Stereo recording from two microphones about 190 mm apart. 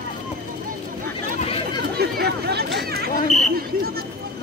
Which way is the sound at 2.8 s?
55° right (ahead or behind).